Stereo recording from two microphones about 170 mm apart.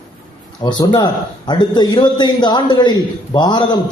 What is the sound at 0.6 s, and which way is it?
A man's voice, 25° left (ahead or behind).